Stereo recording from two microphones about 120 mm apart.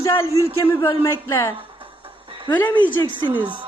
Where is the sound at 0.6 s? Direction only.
25° left (ahead or behind).